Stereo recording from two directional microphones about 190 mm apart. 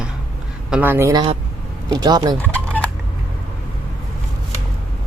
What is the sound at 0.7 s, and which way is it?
A man's voice, 10° right (ahead or behind).